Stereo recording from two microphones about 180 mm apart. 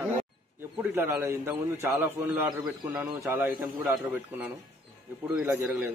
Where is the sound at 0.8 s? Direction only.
15° right (ahead or behind).